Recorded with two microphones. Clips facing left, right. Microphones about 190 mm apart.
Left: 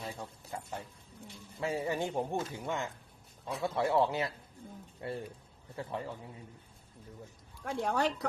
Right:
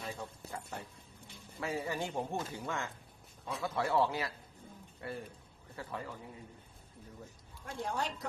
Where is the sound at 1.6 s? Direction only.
25° left (ahead or behind).